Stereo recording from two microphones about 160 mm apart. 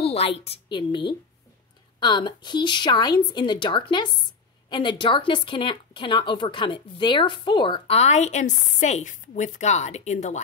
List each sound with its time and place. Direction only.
0.0 s a woman's voice: 40° left (ahead or behind)